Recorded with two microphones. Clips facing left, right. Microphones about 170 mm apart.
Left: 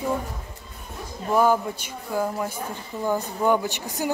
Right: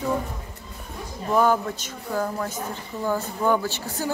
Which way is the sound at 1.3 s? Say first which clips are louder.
Even; 10° left (ahead or behind).